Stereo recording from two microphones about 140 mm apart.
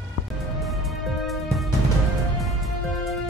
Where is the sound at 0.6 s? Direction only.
Centre (ahead or behind).